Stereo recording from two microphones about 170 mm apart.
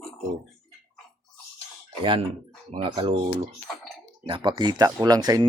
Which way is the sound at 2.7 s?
30° right (ahead or behind).